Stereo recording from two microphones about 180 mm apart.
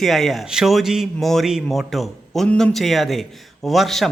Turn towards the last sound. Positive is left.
turn(degrees=0)  # may be behind; listen again after turning